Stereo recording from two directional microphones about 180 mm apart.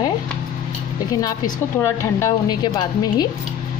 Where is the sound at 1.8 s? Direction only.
20° left (ahead or behind).